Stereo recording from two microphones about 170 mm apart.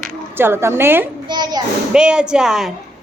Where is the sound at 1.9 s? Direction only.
5° right (ahead or behind).